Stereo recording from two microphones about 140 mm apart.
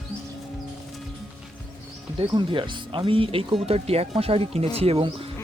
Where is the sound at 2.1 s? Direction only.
35° right (ahead or behind).